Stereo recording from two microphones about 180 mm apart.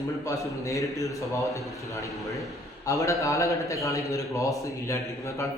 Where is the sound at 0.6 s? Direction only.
15° left (ahead or behind).